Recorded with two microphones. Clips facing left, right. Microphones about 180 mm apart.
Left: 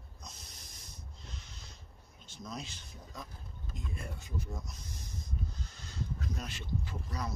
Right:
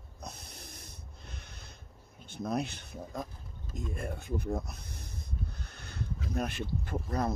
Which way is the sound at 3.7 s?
55° right (ahead or behind).